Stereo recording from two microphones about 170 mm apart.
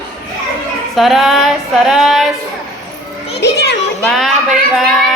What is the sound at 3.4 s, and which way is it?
Speech, 85° left.